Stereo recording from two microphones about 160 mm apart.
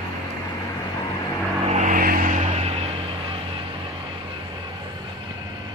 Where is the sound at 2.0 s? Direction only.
60° right (ahead or behind).